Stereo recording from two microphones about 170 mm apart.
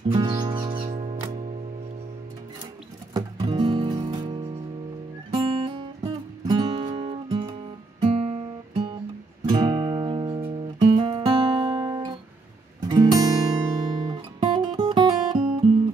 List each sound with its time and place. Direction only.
0.1 s music: 25° right (ahead or behind)
3.1 s music: 25° right (ahead or behind)
8.0 s guitar: 35° right (ahead or behind)
9.5 s music: 25° right (ahead or behind)
11.0 s guitar: 30° right (ahead or behind)